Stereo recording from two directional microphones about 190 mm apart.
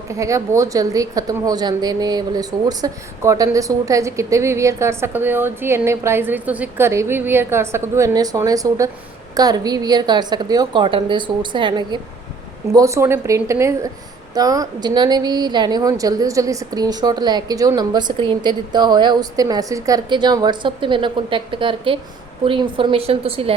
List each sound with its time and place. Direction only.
0.1 s a woman's voice: 15° right (ahead or behind)